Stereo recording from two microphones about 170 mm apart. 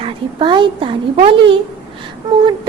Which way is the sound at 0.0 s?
30° right (ahead or behind).